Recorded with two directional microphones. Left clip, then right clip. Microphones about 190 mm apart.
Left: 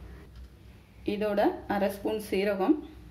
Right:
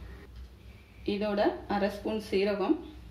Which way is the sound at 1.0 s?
50° left (ahead or behind).